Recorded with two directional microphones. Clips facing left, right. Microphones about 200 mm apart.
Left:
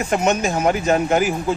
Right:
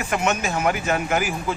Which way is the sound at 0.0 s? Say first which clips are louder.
Left 5 dB; 40° left (ahead or behind).